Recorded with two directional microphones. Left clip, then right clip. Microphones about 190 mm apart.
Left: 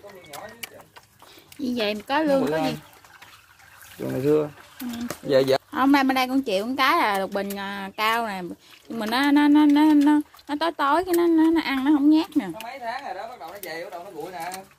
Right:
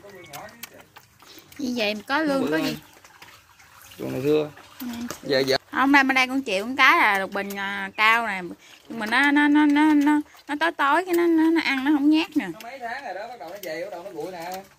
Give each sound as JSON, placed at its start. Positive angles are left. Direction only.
{"t": 1.6, "sound": "speech", "side_deg": 0}
{"t": 4.2, "sound": "speech", "side_deg": 35}
{"t": 5.7, "sound": "speech", "side_deg": 10}